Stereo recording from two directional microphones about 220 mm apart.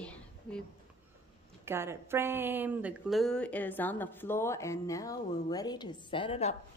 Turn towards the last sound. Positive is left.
turn(degrees=30)  # may be behind; listen again after turning